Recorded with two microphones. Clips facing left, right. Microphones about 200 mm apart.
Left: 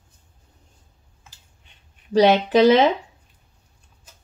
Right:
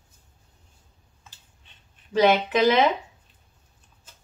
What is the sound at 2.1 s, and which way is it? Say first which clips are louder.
Speech: left 4 dB; 35° left (ahead or behind).